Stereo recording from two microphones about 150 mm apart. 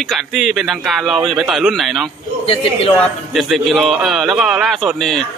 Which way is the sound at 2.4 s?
40° left (ahead or behind).